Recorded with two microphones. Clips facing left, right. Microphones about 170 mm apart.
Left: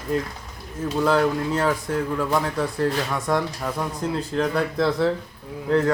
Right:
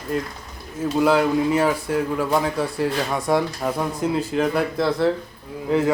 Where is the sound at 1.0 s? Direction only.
10° right (ahead or behind).